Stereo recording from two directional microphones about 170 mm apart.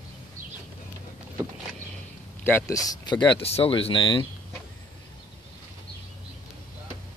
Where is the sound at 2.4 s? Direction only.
15° left (ahead or behind).